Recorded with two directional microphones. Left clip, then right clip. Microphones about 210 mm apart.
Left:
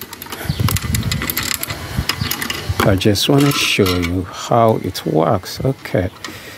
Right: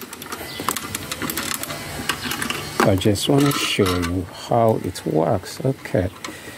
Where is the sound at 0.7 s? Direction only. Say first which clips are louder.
Left 5 dB; 10° left (ahead or behind).